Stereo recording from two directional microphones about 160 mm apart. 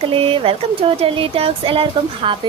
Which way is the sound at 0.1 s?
35° right (ahead or behind).